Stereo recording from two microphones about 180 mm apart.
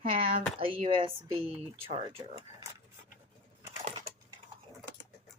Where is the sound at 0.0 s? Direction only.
30° right (ahead or behind).